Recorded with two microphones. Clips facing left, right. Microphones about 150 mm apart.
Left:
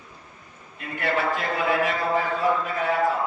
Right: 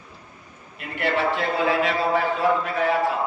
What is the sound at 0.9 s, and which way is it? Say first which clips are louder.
Speech: right 2 dB; 75° right (ahead or behind).